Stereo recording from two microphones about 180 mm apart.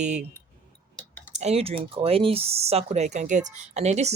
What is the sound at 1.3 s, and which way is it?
Speech, 35° right (ahead or behind).